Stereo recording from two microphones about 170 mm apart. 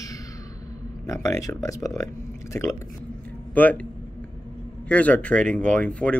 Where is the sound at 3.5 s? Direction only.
10° left (ahead or behind).